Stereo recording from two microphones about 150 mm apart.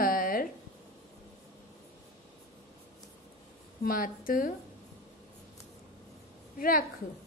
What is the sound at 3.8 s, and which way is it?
Speech, 70° left (ahead or behind).